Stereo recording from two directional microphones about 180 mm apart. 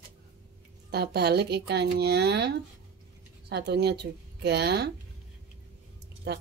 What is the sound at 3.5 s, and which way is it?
A woman's voice, 65° right (ahead or behind).